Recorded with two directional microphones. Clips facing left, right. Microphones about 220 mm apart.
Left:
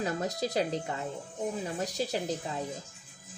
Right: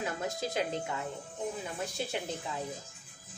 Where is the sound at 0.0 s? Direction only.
35° left (ahead or behind).